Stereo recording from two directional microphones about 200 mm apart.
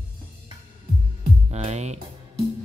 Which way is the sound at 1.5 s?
30° right (ahead or behind).